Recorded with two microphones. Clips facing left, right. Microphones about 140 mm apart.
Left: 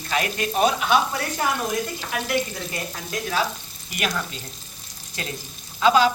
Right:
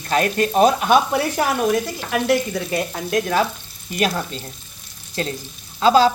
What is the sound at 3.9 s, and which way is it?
Frying, 35° right (ahead or behind).